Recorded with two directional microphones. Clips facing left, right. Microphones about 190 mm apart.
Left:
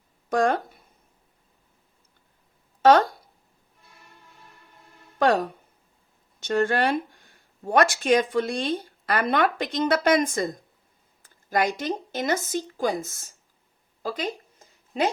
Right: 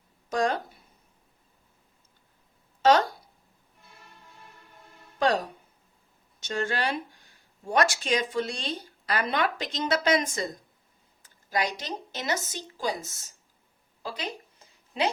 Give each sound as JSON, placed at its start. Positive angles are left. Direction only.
{"t": 0.3, "sound": "speech", "side_deg": 55}
{"t": 2.8, "sound": "speech", "side_deg": 55}
{"t": 5.2, "sound": "speech", "side_deg": 55}